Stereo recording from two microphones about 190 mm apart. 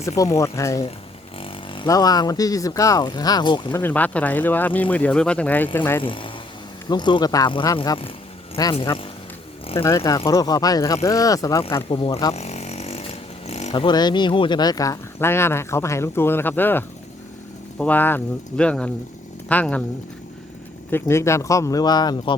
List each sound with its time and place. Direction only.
0.2 s speech: 15° left (ahead or behind)
3.7 s speech: 10° left (ahead or behind)
6.0 s speech: 25° left (ahead or behind)
9.8 s speech: 15° left (ahead or behind)
11.9 s snoring: 30° left (ahead or behind)
13.5 s speech: 35° left (ahead or behind); by 19.8 s 5° left (ahead or behind)
20.9 s speech: 15° left (ahead or behind)